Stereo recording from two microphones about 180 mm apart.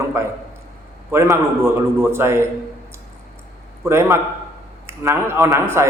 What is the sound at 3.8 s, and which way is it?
A man's voice, 15° right (ahead or behind).